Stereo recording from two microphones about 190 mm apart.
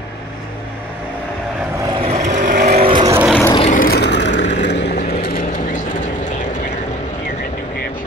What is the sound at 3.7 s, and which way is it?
Vehicle, 50° left (ahead or behind).